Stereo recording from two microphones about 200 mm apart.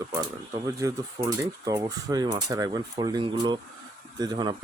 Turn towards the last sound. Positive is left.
turn(degrees=-20)  # may be behind; listen again after turning